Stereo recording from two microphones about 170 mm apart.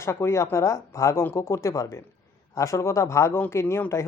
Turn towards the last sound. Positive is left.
turn(degrees=15)  # may be behind; listen again after turning